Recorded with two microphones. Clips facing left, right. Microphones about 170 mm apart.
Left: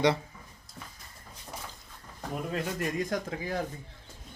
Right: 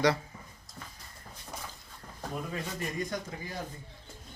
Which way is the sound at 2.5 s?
60° left (ahead or behind).